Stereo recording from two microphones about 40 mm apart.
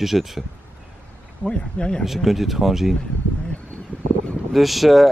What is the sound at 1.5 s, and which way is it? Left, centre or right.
Speech, left.